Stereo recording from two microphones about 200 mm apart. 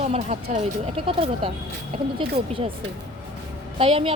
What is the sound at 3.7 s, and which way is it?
Speech, 25° right (ahead or behind).